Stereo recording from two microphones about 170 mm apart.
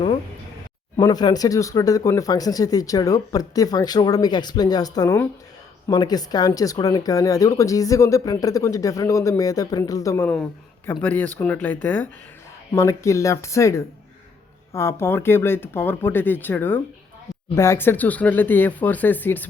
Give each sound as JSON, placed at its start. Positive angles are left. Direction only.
{"t": 0.9, "sound": "speech", "side_deg": 25}